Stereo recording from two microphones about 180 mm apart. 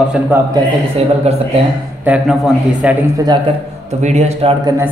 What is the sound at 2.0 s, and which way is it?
Speech, 5° right (ahead or behind).